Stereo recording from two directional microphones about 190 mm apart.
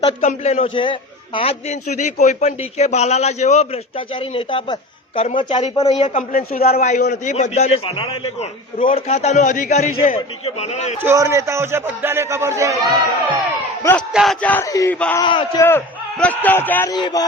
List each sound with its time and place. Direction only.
0.0 s a man's voice: 35° left (ahead or behind)
6.3 s a man's voice: 50° left (ahead or behind)
6.7 s a man's voice: 40° left (ahead or behind)
11.0 s a man's voice: 15° right (ahead or behind)
14.1 s a man's voice: centre (ahead or behind); by 14.9 s 15° left (ahead or behind)
14.9 s speech: 5° left (ahead or behind)
15.2 s speech: 25° left (ahead or behind)
15.6 s a man's voice: 10° left (ahead or behind)